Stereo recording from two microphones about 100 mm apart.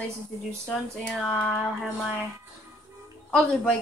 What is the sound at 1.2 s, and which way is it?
Speech, 15° left (ahead or behind).